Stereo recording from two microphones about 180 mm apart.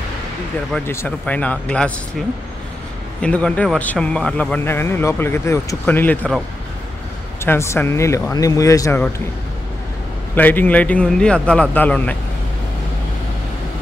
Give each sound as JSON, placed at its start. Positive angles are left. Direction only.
{"t": 0.7, "sound": "a man's voice", "side_deg": 10}
{"t": 3.2, "sound": "a man's voice", "side_deg": 5}
{"t": 7.4, "sound": "a man's voice", "side_deg": 15}
{"t": 10.3, "sound": "a man's voice", "side_deg": 10}